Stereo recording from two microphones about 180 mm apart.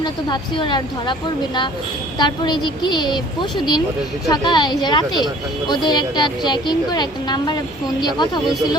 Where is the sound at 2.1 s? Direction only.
25° left (ahead or behind).